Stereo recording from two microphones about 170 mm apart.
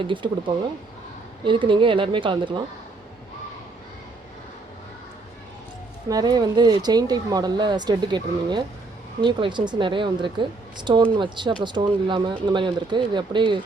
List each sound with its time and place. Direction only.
0.0 s speech: 30° right (ahead or behind)
6.1 s speech: 20° right (ahead or behind)